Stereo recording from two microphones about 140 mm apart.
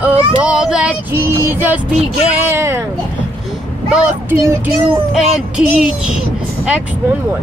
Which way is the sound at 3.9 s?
10° right (ahead or behind).